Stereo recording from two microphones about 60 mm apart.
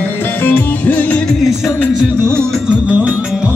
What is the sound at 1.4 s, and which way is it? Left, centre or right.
Music, centre.